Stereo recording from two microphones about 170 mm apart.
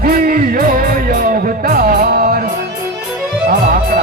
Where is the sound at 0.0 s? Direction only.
55° right (ahead or behind).